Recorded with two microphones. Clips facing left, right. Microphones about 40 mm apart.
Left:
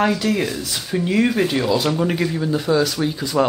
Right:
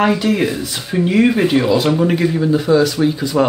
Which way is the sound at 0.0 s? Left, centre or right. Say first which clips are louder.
Right 4 dB; centre.